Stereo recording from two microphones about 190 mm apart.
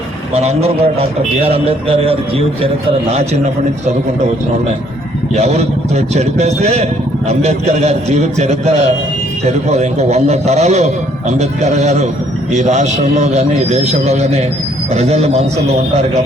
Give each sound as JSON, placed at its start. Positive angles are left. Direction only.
{"t": 0.3, "sound": "a man's voice", "side_deg": -35}
{"t": 5.3, "sound": "a man's voice", "side_deg": -35}